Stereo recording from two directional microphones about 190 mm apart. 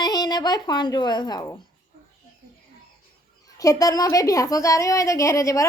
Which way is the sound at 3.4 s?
20° left (ahead or behind).